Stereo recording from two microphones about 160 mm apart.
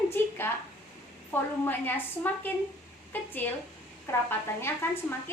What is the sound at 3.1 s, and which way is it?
A woman's voice, 10° left (ahead or behind).